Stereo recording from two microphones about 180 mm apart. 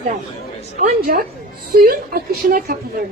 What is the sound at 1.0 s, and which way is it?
A woman's voice, 55° right (ahead or behind).